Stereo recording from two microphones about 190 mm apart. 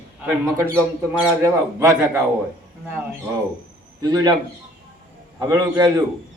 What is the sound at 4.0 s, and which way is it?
Speech, 20° right (ahead or behind).